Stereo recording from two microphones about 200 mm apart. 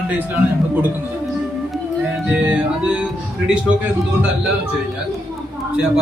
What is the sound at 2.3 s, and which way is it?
Speech, 5° right (ahead or behind).